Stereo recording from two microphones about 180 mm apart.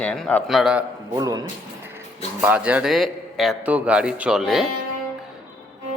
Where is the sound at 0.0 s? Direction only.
5° left (ahead or behind).